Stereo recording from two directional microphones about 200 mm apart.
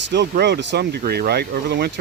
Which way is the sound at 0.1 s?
60° right (ahead or behind).